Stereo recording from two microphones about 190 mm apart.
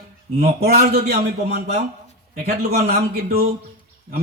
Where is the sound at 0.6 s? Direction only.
55° right (ahead or behind).